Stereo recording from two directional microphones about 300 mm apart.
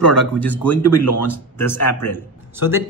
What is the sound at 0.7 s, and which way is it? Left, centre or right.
Speech, left.